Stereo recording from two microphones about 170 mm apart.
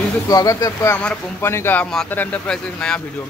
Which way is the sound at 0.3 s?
20° left (ahead or behind).